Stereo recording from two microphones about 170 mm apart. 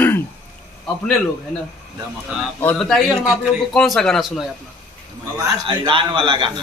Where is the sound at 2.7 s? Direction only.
Centre (ahead or behind).